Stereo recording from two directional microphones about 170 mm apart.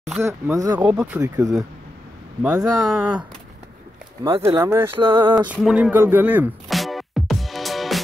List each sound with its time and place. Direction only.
0.2 s speech: 15° right (ahead or behind)
1.2 s speech: 20° right (ahead or behind)
2.5 s speech: 20° right (ahead or behind)
4.2 s speech: 15° right (ahead or behind)
4.9 s speech: 30° right (ahead or behind)
5.2 s music: 10° right (ahead or behind)